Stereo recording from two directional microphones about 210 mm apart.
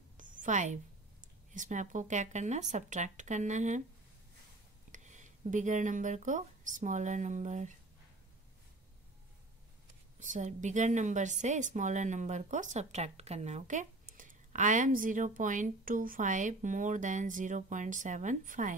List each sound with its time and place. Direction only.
0.2 s a sound: 40° right (ahead or behind)
1.5 s a woman's voice: 35° right (ahead or behind)
4.9 s speech: 35° right (ahead or behind)
10.1 s a woman's voice: 35° right (ahead or behind)